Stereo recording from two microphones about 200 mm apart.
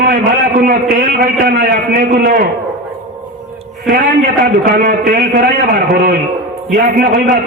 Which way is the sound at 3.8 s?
45° right (ahead or behind).